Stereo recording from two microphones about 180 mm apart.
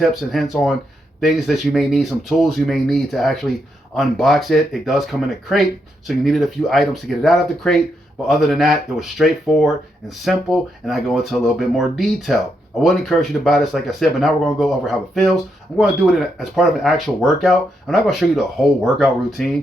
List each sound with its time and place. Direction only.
0.0 s speech: centre (ahead or behind)